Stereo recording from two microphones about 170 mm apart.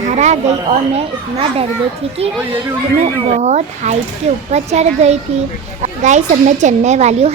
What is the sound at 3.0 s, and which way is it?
A woman's voice, 40° right (ahead or behind).